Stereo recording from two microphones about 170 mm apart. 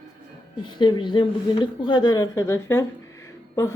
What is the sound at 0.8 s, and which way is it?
A woman's voice, 25° left (ahead or behind).